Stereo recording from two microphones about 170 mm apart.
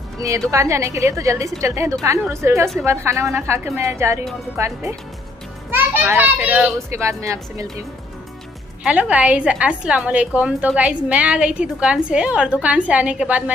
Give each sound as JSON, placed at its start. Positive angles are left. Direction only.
{"t": 0.5, "sound": "a woman's voice", "side_deg": -15}
{"t": 8.8, "sound": "a woman's voice", "side_deg": -10}